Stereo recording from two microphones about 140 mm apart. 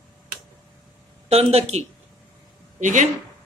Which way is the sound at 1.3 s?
45° right (ahead or behind).